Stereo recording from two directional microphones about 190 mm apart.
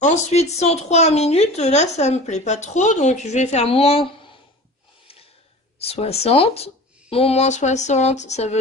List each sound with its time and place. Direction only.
0.0 s speech: 35° left (ahead or behind)
5.8 s speech: 30° left (ahead or behind)